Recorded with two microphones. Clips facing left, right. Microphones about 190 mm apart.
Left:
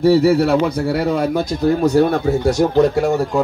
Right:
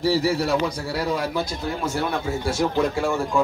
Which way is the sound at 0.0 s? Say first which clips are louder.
Left 9 dB; 60° left (ahead or behind).